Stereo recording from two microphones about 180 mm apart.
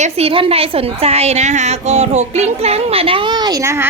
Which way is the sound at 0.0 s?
35° right (ahead or behind).